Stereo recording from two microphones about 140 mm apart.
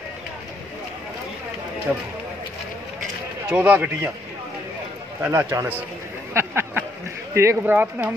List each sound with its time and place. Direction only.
3.5 s speech: 10° right (ahead or behind)
5.2 s speech: 15° right (ahead or behind)
6.3 s a sound: 15° right (ahead or behind)
7.3 s speech: 15° right (ahead or behind)